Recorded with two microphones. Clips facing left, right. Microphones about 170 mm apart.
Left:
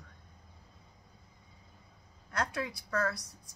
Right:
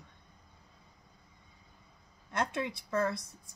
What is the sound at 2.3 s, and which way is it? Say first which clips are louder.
Speech: right 2 dB; 25° right (ahead or behind).